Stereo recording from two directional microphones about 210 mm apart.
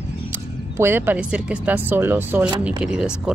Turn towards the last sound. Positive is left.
turn(degrees=-5)  # may be behind; listen again after turning